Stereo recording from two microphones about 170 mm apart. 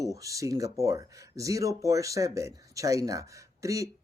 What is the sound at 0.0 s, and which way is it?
Speech, 20° right (ahead or behind).